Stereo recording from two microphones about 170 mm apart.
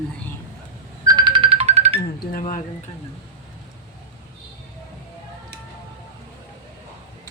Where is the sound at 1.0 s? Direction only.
25° right (ahead or behind).